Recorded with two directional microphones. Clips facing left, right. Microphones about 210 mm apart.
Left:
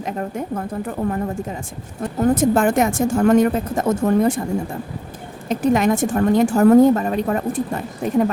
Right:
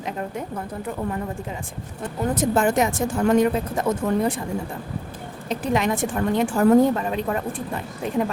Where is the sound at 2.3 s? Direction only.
55° left (ahead or behind).